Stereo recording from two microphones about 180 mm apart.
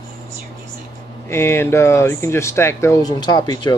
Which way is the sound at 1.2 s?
15° left (ahead or behind).